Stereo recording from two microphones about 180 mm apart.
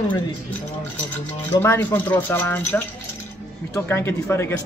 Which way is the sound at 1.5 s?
15° left (ahead or behind).